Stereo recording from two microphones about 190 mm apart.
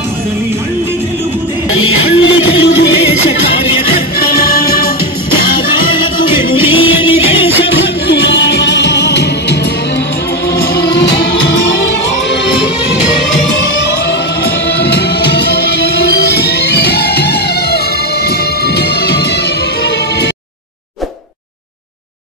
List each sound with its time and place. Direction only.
1.7 s music: 90° left; by 3.3 s 65° left (ahead or behind)
4.2 s music: 50° left (ahead or behind)
6.7 s music: 30° left (ahead or behind)
8.1 s music: 65° left (ahead or behind)
10.6 s music: 60° left (ahead or behind)
14.9 s music: 60° left (ahead or behind)